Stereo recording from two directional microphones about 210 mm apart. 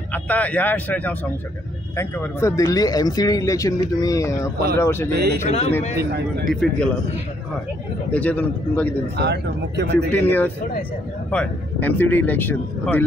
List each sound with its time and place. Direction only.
0.1 s speech: 5° left (ahead or behind)
5.1 s speech: 50° right (ahead or behind)
5.5 s speech: 30° left (ahead or behind)
6.1 s speech: 50° right (ahead or behind)
6.5 s speech: 5° left (ahead or behind)
8.1 s speech: 5° left (ahead or behind)
9.1 s speech: 55° right (ahead or behind)
10.2 s speech: 10° left (ahead or behind)